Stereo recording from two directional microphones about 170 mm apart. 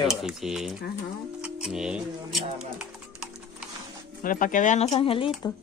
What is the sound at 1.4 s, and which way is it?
Typing, 5° right (ahead or behind).